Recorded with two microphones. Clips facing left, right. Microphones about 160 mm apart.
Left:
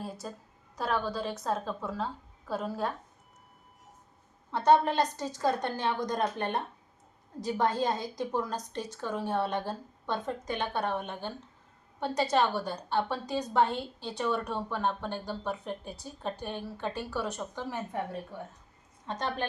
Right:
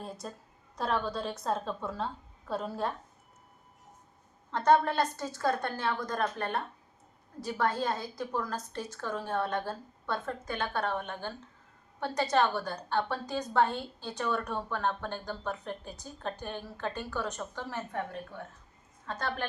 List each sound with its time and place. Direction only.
0.0 s a woman's voice: 5° left (ahead or behind)
4.5 s a woman's voice: 10° left (ahead or behind)
7.4 s a woman's voice: 20° left (ahead or behind)